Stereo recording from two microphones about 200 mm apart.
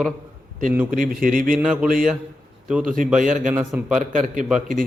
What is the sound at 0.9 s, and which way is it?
Speech, 40° right (ahead or behind).